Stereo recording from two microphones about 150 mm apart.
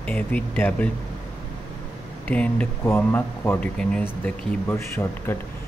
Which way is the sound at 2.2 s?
10° left (ahead or behind).